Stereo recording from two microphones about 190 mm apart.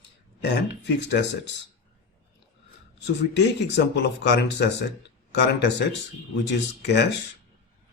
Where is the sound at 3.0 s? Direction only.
65° left (ahead or behind).